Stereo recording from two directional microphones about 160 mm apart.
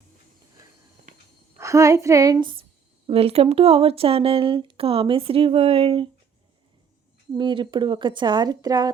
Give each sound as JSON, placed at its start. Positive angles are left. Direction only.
{"t": 1.5, "sound": "a woman's voice", "side_deg": -20}
{"t": 7.3, "sound": "a woman's voice", "side_deg": -30}